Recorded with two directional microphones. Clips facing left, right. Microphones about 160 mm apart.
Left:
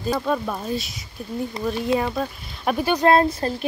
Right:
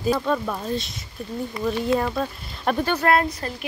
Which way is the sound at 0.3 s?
5° left (ahead or behind).